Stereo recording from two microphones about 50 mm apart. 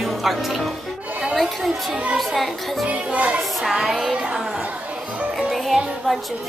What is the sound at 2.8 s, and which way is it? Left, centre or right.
Music, right.